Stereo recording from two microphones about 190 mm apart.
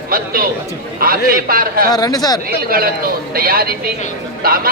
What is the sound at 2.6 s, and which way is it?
A man's voice, 50° right (ahead or behind).